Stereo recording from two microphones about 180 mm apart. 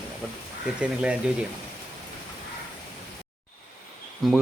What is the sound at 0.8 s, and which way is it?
Speech, 5° right (ahead or behind).